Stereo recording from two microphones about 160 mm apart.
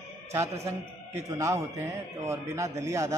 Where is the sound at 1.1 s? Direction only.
20° right (ahead or behind).